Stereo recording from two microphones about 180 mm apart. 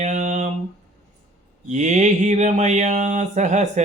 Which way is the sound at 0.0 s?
40° right (ahead or behind).